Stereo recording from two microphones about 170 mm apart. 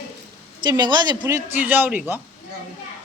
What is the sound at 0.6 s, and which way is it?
Speech, 25° right (ahead or behind).